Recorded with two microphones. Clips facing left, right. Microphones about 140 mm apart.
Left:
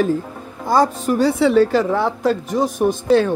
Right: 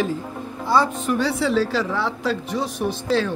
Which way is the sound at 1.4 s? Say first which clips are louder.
Left 7 dB; 55° left (ahead or behind).